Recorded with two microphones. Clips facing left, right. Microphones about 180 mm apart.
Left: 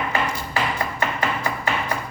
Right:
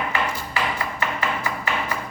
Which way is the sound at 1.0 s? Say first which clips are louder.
Left 2 dB; 40° left (ahead or behind).